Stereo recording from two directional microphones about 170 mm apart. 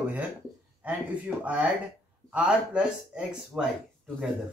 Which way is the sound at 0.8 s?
10° right (ahead or behind).